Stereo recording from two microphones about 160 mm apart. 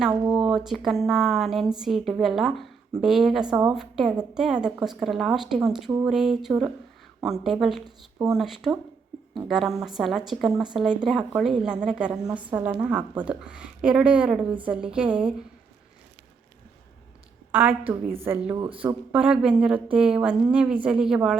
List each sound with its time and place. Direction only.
0.1 s speech: 25° right (ahead or behind)
0.4 s speech: centre (ahead or behind)
7.9 s speech: 20° right (ahead or behind)
8.4 s a woman's voice: centre (ahead or behind)
17.5 s a woman's voice: 10° right (ahead or behind)